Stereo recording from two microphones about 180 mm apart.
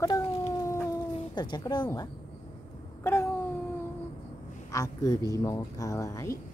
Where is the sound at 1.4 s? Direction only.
25° left (ahead or behind).